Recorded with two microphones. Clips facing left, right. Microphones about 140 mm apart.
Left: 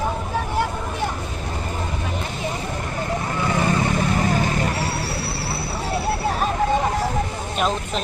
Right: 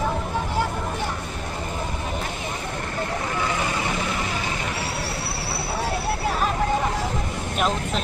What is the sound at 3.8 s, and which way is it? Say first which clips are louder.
Vehicle: left 5 dB; 45° left (ahead or behind).